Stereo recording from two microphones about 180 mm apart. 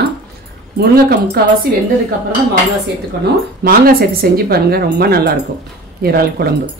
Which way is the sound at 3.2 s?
55° right (ahead or behind).